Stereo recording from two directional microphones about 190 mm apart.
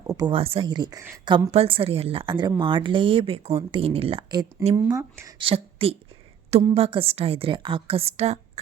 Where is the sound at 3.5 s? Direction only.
15° right (ahead or behind).